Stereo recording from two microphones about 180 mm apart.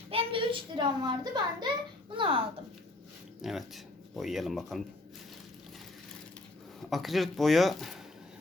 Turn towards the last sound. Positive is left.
turn(degrees=0)  # may be behind; listen again after turning